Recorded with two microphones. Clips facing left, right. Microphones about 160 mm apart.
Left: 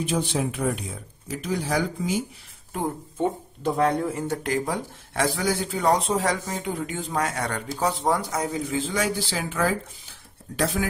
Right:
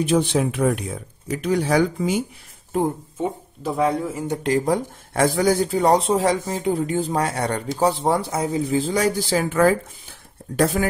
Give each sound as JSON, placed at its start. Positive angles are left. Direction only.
{"t": 0.0, "sound": "speech", "side_deg": -75}
{"t": 3.2, "sound": "speech", "side_deg": -5}
{"t": 4.3, "sound": "speech", "side_deg": -25}
{"t": 4.6, "sound": "speech", "side_deg": -50}